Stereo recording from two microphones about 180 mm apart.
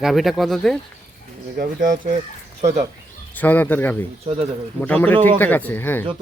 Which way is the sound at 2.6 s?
40° right (ahead or behind).